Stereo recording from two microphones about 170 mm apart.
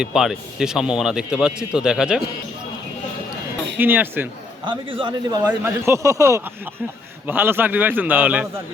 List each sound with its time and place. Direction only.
0.0 s speech: 5° right (ahead or behind)
3.8 s a man's voice: 10° right (ahead or behind)
4.6 s speech: 30° right (ahead or behind)
5.5 s a man's voice: 15° right (ahead or behind)